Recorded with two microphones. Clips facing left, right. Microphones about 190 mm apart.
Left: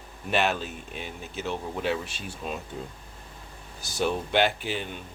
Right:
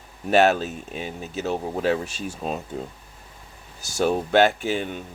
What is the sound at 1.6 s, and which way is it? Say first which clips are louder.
Speech: right 6 dB; 55° right (ahead or behind).